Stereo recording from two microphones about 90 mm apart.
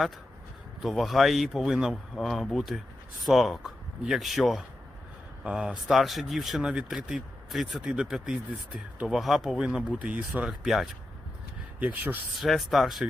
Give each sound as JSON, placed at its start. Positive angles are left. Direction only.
{"t": 0.8, "sound": "speech", "side_deg": 0}
{"t": 11.8, "sound": "speech", "side_deg": -15}
{"t": 12.3, "sound": "speech", "side_deg": 0}